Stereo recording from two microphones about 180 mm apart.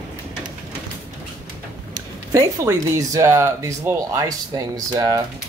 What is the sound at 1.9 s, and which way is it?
Speech, 20° right (ahead or behind).